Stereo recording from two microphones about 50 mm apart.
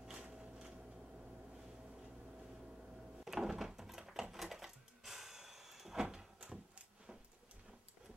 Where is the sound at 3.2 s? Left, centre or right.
Centre.